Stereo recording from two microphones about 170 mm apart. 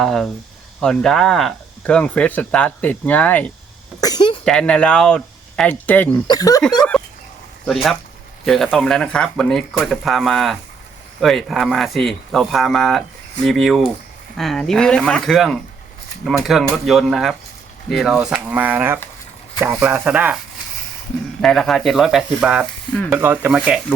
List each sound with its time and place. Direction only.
0.0 s speech: centre (ahead or behind)
4.0 s a sound: 25° left (ahead or behind)
4.4 s speech: 5° left (ahead or behind)
6.2 s speech: 20° left (ahead or behind)
7.6 s speech: centre (ahead or behind)
21.4 s speech: centre (ahead or behind)
23.1 s speech: 10° right (ahead or behind)